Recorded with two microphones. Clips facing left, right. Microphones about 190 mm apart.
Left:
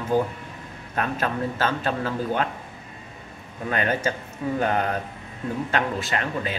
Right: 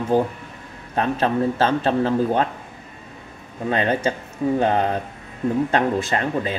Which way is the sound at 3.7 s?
25° right (ahead or behind).